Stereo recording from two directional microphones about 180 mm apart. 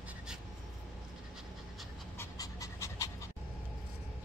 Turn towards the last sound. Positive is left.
turn(degrees=20)  # may be behind; listen again after turning